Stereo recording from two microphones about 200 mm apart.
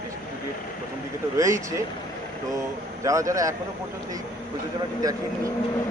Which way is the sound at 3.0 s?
15° right (ahead or behind).